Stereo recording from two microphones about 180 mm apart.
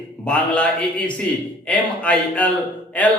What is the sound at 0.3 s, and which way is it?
A man's voice, 5° left (ahead or behind).